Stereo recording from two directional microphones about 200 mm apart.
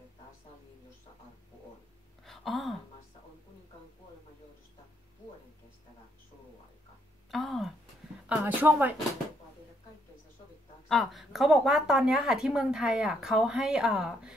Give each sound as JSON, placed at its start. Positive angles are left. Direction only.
{"t": 2.2, "sound": "a sound", "side_deg": 0}
{"t": 7.2, "sound": "speech", "side_deg": 0}
{"t": 10.9, "sound": "a woman's voice", "side_deg": 0}